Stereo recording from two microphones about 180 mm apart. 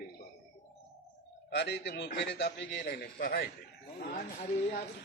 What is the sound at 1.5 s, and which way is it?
A man's voice, 70° left (ahead or behind).